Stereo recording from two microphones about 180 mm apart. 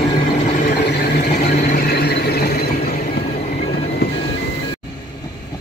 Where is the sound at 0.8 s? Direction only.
65° left (ahead or behind).